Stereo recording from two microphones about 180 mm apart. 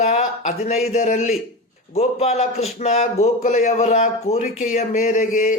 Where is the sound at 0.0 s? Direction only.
40° left (ahead or behind).